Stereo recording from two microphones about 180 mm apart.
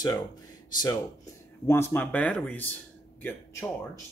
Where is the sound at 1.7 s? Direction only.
15° left (ahead or behind).